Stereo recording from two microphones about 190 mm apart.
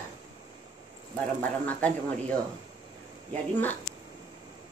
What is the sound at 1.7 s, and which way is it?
Speech, 5° left (ahead or behind).